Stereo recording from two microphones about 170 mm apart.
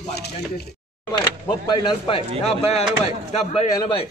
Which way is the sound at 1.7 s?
30° left (ahead or behind).